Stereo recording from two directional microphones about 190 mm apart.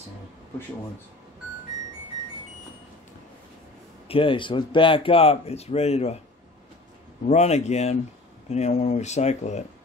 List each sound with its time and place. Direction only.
4.1 s speech: 25° left (ahead or behind)
7.2 s speech: 35° left (ahead or behind)